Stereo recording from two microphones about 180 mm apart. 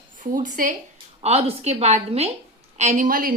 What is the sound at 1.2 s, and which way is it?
A woman's voice, 35° right (ahead or behind).